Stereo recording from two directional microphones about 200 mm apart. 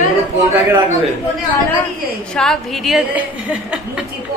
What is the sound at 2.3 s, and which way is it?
Speech, centre (ahead or behind).